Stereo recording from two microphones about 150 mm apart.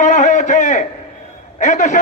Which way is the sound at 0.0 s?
55° left (ahead or behind).